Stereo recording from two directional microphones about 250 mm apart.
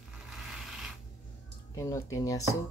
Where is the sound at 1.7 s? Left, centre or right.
Centre.